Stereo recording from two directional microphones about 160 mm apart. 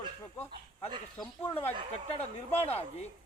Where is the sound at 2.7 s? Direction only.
40° left (ahead or behind).